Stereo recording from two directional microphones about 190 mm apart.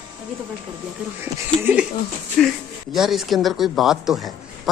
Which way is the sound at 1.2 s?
10° right (ahead or behind).